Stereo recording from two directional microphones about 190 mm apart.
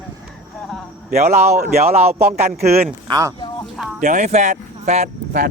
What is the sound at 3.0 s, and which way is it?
Speech, 20° right (ahead or behind).